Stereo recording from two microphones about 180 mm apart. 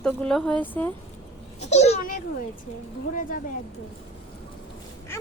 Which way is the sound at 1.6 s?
40° left (ahead or behind).